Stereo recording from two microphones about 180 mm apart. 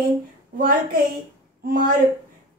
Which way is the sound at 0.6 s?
50° right (ahead or behind).